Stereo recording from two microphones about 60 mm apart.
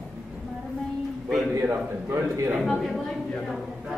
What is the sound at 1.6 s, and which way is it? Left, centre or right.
Speech, right.